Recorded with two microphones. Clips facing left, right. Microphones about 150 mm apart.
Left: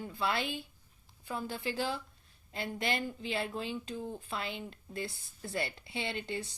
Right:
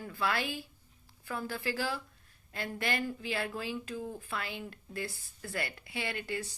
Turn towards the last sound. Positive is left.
turn(degrees=25)  # may be behind; listen again after turning